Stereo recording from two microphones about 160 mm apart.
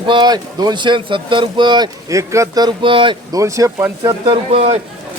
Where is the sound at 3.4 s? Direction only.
20° right (ahead or behind).